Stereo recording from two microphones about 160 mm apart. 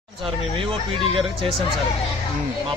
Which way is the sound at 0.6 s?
30° right (ahead or behind).